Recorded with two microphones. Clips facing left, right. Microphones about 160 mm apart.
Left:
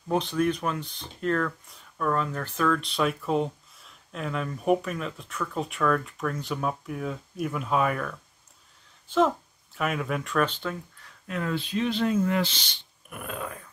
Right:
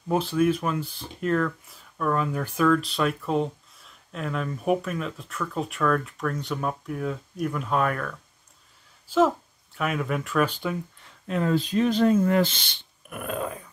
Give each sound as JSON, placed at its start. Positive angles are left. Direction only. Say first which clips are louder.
{"t": 0.1, "sound": "speech", "louder": "right 3 dB", "side_deg": -5}
{"t": 11.2, "sound": "speech", "louder": "right 5 dB", "side_deg": -30}
{"t": 11.5, "sound": "speech", "louder": "right 5 dB", "side_deg": -40}